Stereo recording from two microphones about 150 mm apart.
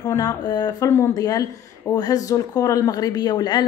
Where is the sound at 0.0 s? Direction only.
20° left (ahead or behind).